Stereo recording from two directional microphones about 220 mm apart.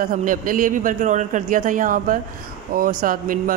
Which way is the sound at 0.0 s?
40° right (ahead or behind).